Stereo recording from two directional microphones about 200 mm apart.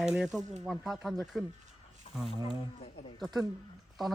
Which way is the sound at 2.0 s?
25° left (ahead or behind).